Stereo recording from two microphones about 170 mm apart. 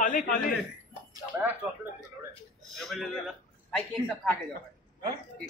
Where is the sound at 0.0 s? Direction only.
50° left (ahead or behind).